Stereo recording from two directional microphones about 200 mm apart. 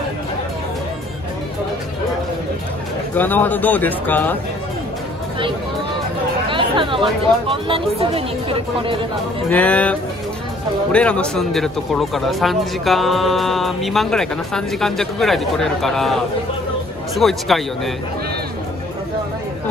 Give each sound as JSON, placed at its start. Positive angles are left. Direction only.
{"t": 3.2, "sound": "speech", "side_deg": 10}
{"t": 6.5, "sound": "speech", "side_deg": -25}
{"t": 9.5, "sound": "speech", "side_deg": 5}